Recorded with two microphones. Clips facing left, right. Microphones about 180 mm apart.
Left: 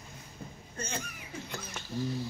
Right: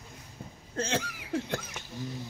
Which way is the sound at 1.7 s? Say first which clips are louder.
Left 4 dB; 15° right (ahead or behind).